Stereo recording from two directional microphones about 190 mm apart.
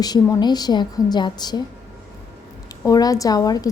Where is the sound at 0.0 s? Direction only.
20° left (ahead or behind).